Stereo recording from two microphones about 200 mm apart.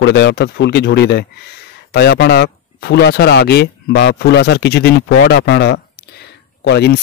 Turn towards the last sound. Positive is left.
turn(degrees=55)  # may be behind; listen again after turning